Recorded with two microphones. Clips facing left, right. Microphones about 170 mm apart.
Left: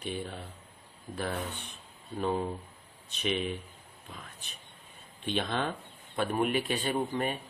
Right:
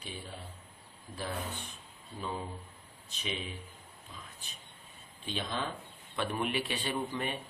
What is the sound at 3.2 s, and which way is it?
Speech, 65° left (ahead or behind).